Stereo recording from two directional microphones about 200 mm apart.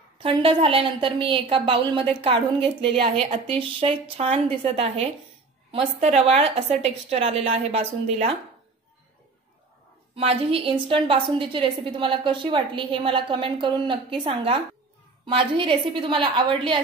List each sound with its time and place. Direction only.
0.2 s a woman's voice: 25° right (ahead or behind)
10.1 s a woman's voice: 30° right (ahead or behind)